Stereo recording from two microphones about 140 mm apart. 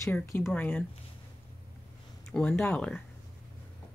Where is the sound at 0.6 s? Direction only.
10° left (ahead or behind).